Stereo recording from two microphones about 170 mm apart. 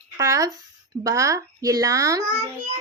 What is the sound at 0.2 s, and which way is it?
A child's voice, 20° right (ahead or behind).